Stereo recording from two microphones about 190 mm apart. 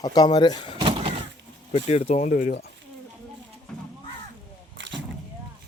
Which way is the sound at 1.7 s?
35° left (ahead or behind).